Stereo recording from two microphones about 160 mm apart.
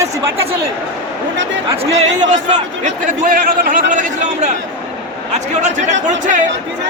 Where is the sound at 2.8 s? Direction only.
60° right (ahead or behind).